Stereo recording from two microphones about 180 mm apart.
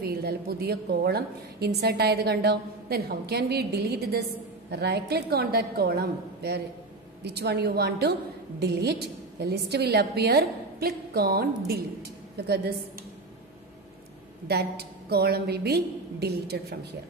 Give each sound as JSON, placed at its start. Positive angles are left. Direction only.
{"t": 0.0, "sound": "a woman's voice", "side_deg": -60}
{"t": 14.5, "sound": "a woman's voice", "side_deg": -65}